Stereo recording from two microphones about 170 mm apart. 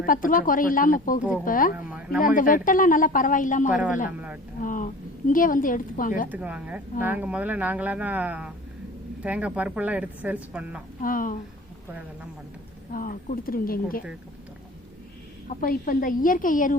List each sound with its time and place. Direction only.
0.0 s speech: 55° left (ahead or behind)
1.7 s a woman's voice: 10° right (ahead or behind)
2.2 s speech: 55° left (ahead or behind)
6.2 s a woman's voice: 10° right (ahead or behind)
11.0 s speech: 55° left (ahead or behind)
12.9 s a woman's voice: 55° left (ahead or behind)
15.4 s a woman's voice: 55° left (ahead or behind)